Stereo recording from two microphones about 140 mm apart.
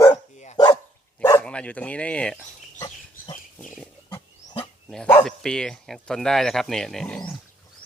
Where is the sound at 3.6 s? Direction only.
Centre (ahead or behind).